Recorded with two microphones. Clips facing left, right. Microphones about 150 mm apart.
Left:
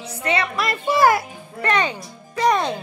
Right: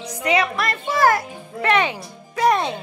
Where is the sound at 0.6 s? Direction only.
10° left (ahead or behind).